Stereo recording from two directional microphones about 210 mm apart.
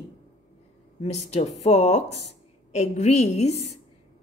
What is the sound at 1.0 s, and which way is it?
A woman's voice, 30° left (ahead or behind).